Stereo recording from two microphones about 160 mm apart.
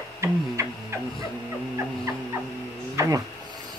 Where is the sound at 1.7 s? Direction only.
20° right (ahead or behind).